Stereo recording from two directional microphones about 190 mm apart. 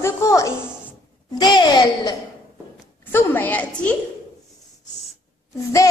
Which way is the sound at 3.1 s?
10° left (ahead or behind).